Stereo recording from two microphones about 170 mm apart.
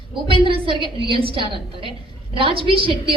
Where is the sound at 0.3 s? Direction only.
30° right (ahead or behind).